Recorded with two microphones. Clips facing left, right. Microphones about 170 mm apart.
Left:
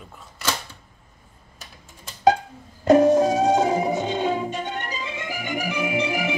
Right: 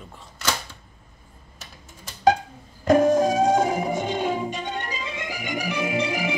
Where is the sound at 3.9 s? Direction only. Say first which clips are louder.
Left 2 dB; 15° right (ahead or behind).